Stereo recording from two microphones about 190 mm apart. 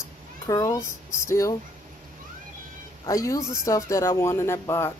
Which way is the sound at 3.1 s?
15° left (ahead or behind).